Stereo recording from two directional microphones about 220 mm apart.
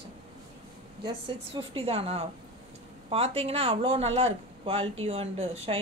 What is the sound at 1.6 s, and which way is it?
Speech, 25° right (ahead or behind).